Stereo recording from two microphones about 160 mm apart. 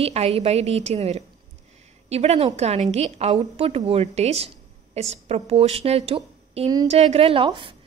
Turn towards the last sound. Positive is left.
turn(degrees=-30)  # may be behind; listen again after turning